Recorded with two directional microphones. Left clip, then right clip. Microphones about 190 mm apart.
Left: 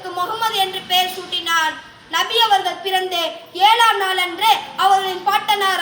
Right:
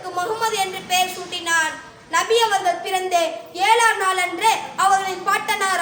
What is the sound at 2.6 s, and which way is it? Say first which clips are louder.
A woman's voice: left 1 dB; 25° right (ahead or behind).